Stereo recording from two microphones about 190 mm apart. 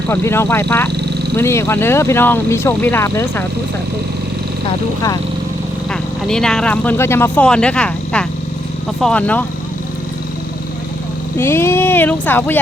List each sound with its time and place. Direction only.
0.1 s speech: 15° left (ahead or behind)
5.9 s speech: 5° left (ahead or behind)
11.3 s speech: 10° left (ahead or behind)